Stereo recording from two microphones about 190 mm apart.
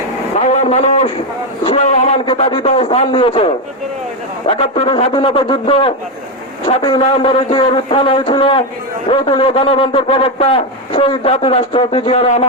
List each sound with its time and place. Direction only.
0.3 s a man's voice: 35° left (ahead or behind)